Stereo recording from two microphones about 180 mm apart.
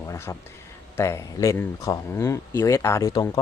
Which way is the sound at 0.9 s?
15° left (ahead or behind).